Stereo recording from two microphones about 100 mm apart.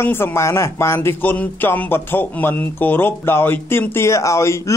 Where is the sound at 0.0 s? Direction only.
25° left (ahead or behind).